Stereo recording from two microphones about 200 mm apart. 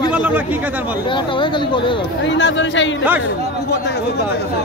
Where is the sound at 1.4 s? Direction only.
25° left (ahead or behind).